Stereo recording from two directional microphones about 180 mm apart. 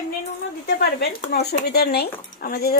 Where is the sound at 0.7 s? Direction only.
65° left (ahead or behind).